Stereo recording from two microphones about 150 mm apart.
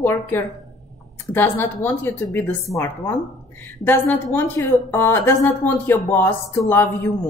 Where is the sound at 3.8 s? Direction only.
15° left (ahead or behind).